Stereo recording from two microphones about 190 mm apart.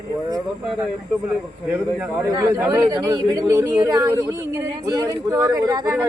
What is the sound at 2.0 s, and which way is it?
Speech, 15° right (ahead or behind).